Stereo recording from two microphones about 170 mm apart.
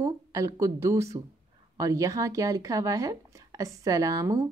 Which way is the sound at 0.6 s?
15° right (ahead or behind).